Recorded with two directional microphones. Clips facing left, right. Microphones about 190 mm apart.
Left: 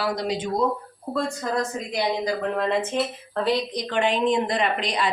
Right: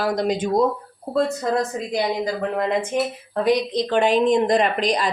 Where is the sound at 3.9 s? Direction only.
40° right (ahead or behind).